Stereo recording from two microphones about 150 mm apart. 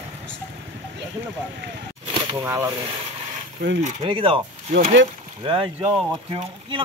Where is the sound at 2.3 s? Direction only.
20° right (ahead or behind).